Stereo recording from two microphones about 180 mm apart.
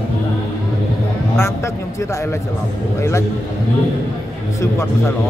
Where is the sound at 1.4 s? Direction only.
15° left (ahead or behind).